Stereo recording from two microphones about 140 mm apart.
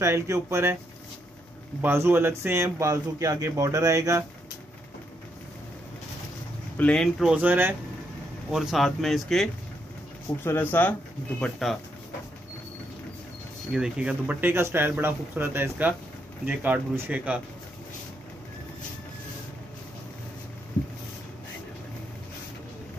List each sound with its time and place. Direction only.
0.0 s speech: 20° right (ahead or behind)
1.8 s speech: 15° right (ahead or behind)
6.8 s speech: 5° left (ahead or behind)
7.2 s speech: 10° right (ahead or behind)
10.4 s speech: 15° left (ahead or behind)
13.7 s speech: 5° right (ahead or behind)